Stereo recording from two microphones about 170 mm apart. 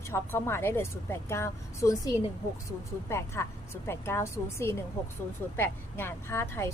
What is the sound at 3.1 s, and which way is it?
A woman's voice, 15° left (ahead or behind).